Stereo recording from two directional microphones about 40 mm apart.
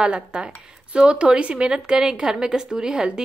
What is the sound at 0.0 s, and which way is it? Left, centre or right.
A woman's voice, right.